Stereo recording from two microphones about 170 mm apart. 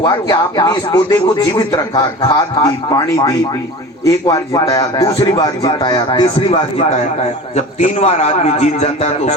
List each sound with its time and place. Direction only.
0.0 s a man's voice: 25° left (ahead or behind)
7.5 s a man's voice: 40° left (ahead or behind)